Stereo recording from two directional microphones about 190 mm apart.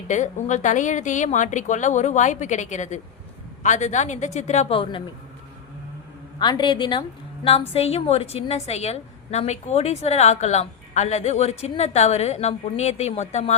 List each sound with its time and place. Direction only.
0.1 s a woman's voice: 40° left (ahead or behind)
6.4 s a woman's voice: 25° left (ahead or behind)